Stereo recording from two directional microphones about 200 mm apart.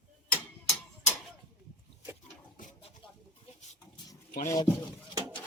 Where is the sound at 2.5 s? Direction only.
40° left (ahead or behind).